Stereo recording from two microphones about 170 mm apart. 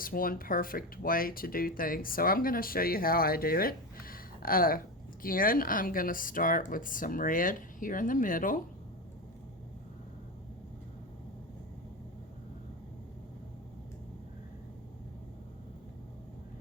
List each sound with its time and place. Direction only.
0.0 s speech: 55° left (ahead or behind)